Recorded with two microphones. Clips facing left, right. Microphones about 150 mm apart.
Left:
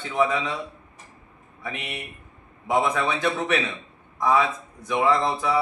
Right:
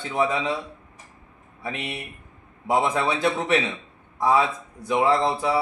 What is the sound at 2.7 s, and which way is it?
Speech, 30° right (ahead or behind).